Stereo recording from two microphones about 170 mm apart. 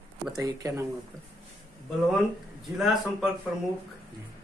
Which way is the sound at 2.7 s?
Centre (ahead or behind).